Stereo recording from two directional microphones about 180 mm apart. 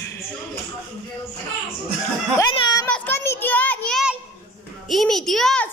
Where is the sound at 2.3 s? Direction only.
20° left (ahead or behind).